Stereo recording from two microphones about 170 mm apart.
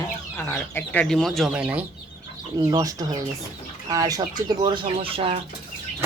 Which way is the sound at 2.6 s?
20° right (ahead or behind).